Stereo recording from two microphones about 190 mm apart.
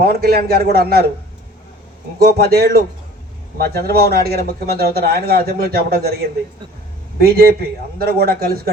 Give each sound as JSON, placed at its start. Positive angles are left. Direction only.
{"t": 0.0, "sound": "speech", "side_deg": -55}
{"t": 2.1, "sound": "speech", "side_deg": -55}
{"t": 7.3, "sound": "a man's voice", "side_deg": -55}